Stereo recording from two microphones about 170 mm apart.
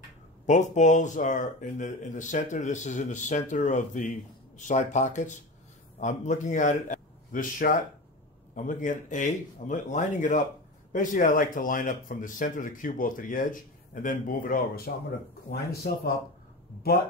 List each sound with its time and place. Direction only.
0.5 s a man's voice: 45° left (ahead or behind); by 16.1 s 65° left (ahead or behind)